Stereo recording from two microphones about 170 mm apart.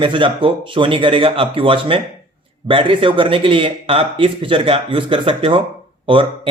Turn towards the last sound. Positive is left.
turn(degrees=-30)  # may be behind; listen again after turning